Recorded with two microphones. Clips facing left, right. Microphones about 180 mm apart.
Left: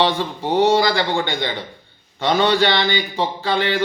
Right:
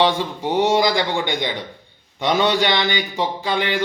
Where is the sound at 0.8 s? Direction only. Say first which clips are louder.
Even; 15° right (ahead or behind).